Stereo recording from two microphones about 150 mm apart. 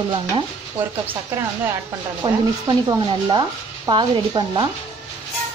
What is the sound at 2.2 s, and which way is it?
Speech, 25° right (ahead or behind).